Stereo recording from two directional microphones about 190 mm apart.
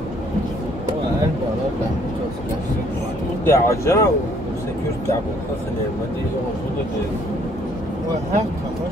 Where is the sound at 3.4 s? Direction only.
15° left (ahead or behind).